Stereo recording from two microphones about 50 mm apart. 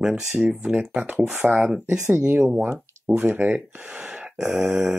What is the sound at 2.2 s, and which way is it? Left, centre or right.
Speech, right.